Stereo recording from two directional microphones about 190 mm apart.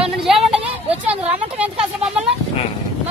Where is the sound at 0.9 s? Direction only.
30° right (ahead or behind).